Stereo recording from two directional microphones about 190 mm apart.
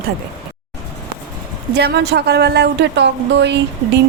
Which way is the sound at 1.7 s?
60° right (ahead or behind).